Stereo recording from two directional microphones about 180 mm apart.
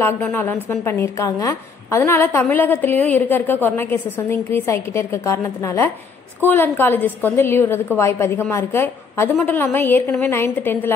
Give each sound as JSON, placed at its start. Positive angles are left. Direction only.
{"t": 0.0, "sound": "a woman's voice", "side_deg": 10}